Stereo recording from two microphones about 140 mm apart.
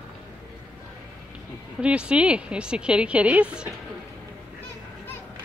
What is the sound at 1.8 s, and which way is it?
A woman's voice, 5° right (ahead or behind).